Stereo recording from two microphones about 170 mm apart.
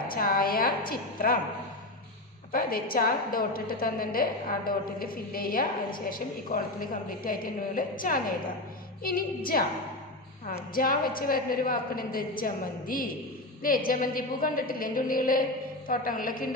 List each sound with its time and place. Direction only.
0.1 s a woman's voice: 55° left (ahead or behind)
2.5 s a woman's voice: 60° left (ahead or behind)
10.7 s a woman's voice: 60° left (ahead or behind)